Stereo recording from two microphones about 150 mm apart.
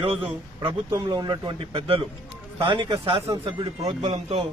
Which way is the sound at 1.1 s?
30° right (ahead or behind).